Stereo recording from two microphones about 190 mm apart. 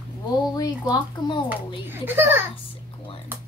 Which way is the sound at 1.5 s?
10° right (ahead or behind).